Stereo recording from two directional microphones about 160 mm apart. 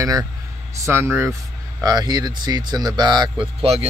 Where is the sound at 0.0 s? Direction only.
20° right (ahead or behind).